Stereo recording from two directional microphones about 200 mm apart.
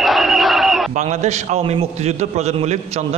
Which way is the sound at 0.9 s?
35° right (ahead or behind).